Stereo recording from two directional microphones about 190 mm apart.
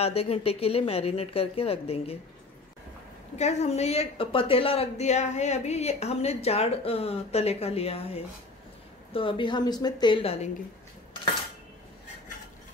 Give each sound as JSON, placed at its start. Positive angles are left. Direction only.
{"t": 0.0, "sound": "a woman's voice", "side_deg": 30}
{"t": 3.3, "sound": "a woman's voice", "side_deg": 35}